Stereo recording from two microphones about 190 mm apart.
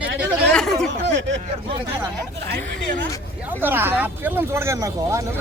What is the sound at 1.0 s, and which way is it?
Speech, 70° right (ahead or behind).